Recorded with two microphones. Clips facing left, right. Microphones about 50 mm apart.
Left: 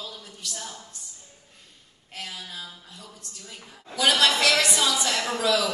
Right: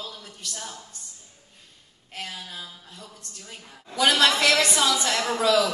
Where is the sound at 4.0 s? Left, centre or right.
Right.